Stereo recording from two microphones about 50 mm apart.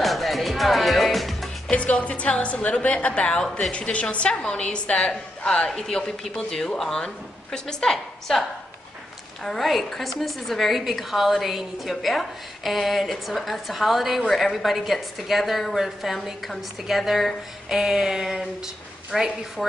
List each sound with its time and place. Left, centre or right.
0.0 s music: centre
1.7 s a woman's voice: left; by 17.3 s centre
17.6 s a sound: centre
19.1 s a woman's voice: centre